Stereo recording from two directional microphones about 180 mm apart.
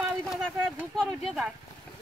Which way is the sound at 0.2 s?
Centre (ahead or behind).